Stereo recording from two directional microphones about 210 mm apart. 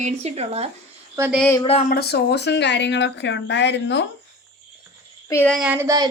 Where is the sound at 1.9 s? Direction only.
50° left (ahead or behind).